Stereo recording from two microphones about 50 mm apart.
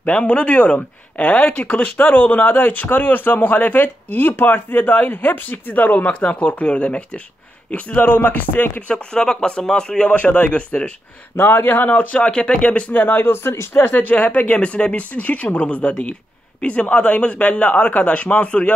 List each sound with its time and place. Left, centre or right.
0.0 s speech: left
6.1 s speech: left
8.8 s speech: centre
11.3 s a man's voice: left
11.9 s speech: left
13.8 s speech: left